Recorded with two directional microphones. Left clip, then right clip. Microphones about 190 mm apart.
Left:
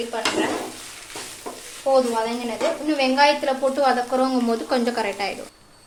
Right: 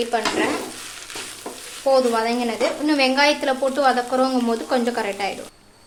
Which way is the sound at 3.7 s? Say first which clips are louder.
Right 2 dB; 20° right (ahead or behind).